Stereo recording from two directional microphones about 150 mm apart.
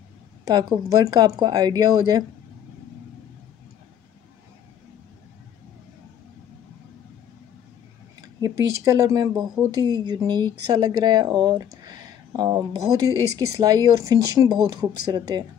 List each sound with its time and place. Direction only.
0.5 s speech: 25° right (ahead or behind)
8.2 s speech: 25° right (ahead or behind)